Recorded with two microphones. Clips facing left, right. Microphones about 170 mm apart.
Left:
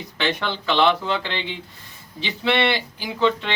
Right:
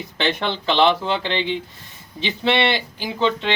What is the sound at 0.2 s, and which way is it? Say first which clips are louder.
Speech: right 2 dB; 25° right (ahead or behind).